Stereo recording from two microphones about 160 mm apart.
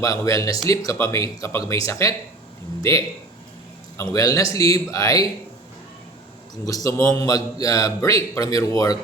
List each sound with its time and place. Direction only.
0.0 s speech: 20° left (ahead or behind)
3.9 s speech: 20° left (ahead or behind)
6.7 s speech: 20° left (ahead or behind)